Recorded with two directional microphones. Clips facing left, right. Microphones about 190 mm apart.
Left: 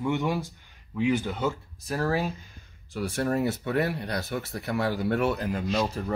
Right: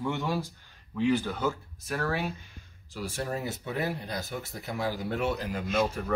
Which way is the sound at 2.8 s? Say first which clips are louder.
Left 6 dB; 60° left (ahead or behind).